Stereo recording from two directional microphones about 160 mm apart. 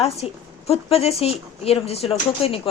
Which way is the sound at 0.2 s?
5° right (ahead or behind).